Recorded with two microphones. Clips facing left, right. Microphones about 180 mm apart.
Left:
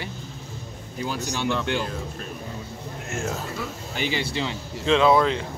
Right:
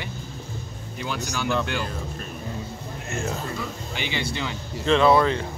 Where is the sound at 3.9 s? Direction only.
40° left (ahead or behind).